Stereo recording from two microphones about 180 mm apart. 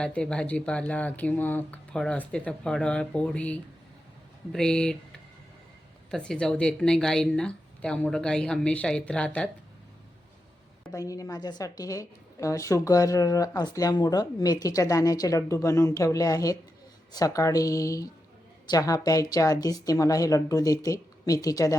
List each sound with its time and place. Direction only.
0.0 s a woman's voice: 5° left (ahead or behind)
6.1 s a woman's voice: 5° left (ahead or behind)
10.9 s a woman's voice: 20° left (ahead or behind)